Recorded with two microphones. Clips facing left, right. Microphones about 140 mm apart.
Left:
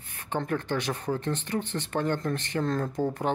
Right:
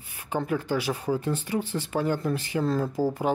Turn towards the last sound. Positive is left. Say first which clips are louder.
# right 3 dB
turn(degrees=-5)  # may be behind; listen again after turning